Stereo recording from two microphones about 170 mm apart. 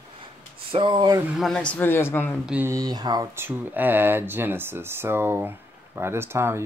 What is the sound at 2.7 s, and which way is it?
Speech, 25° right (ahead or behind).